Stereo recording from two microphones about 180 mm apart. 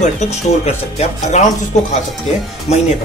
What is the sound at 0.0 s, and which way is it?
Speech, 40° left (ahead or behind).